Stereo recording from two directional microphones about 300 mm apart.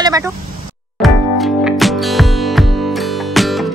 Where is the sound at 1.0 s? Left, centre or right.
Centre.